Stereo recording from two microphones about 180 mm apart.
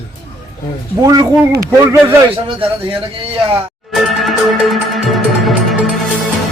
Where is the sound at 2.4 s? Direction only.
30° right (ahead or behind).